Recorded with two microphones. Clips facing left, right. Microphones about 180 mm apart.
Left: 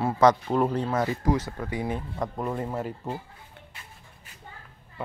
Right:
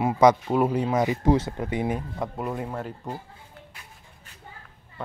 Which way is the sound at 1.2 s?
25° right (ahead or behind).